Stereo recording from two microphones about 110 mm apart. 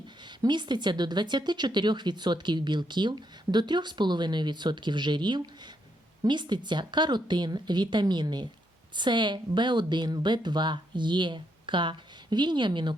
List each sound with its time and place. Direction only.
0.2 s speech: 45° right (ahead or behind)